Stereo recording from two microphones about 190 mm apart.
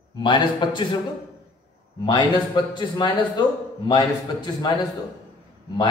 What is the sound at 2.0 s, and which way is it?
A man's voice, 25° left (ahead or behind).